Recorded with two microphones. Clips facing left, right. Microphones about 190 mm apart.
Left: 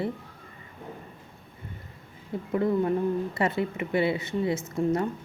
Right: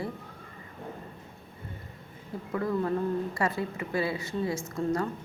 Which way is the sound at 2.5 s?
20° left (ahead or behind).